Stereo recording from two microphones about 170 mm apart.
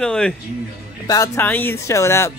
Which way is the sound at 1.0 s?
20° left (ahead or behind).